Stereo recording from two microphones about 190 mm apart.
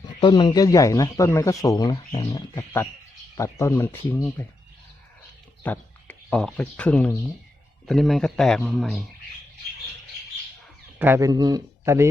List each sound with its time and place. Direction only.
0.2 s speech: 25° left (ahead or behind)
5.6 s a man's voice: 10° left (ahead or behind)
11.0 s a man's voice: 15° right (ahead or behind)